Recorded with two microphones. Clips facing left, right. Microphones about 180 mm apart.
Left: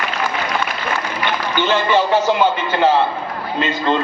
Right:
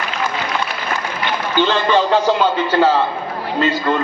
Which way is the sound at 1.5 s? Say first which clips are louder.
Right 1 dB; 15° left (ahead or behind).